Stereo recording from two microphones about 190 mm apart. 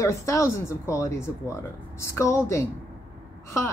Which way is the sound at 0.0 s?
15° left (ahead or behind).